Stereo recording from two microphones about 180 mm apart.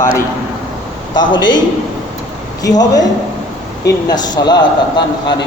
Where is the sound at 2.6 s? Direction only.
20° left (ahead or behind).